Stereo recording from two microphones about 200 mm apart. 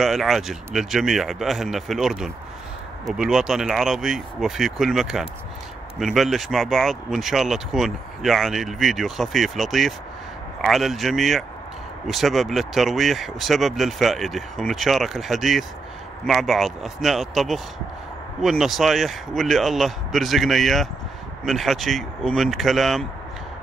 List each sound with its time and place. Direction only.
0.0 s speech: centre (ahead or behind)